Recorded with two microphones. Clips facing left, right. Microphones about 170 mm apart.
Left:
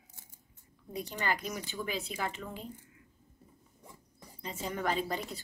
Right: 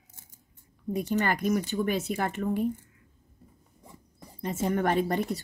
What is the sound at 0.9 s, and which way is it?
Speech, 50° right (ahead or behind).